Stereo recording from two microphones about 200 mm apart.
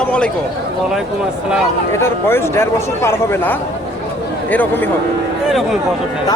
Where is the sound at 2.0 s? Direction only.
10° left (ahead or behind).